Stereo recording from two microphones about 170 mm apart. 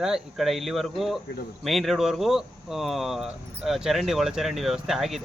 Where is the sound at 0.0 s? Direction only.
Centre (ahead or behind).